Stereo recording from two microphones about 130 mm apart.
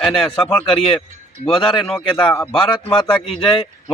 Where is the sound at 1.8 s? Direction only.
5° left (ahead or behind).